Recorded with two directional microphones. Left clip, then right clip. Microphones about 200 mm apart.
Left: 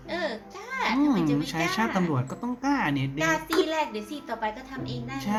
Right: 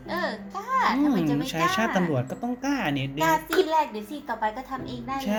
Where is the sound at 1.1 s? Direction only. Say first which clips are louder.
Right 1 dB; 15° left (ahead or behind).